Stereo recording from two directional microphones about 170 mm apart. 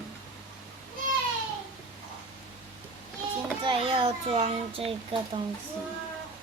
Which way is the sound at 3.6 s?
30° right (ahead or behind).